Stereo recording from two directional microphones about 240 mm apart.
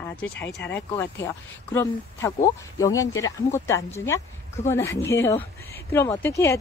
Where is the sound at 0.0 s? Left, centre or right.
Centre.